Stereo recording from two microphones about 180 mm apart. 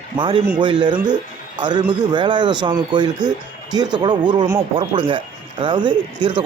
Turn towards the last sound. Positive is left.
turn(degrees=-25)  # may be behind; listen again after turning